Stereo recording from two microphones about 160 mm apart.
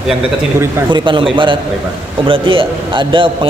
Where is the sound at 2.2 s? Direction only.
35° right (ahead or behind).